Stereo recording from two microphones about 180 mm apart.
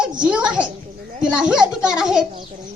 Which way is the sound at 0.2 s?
5° right (ahead or behind).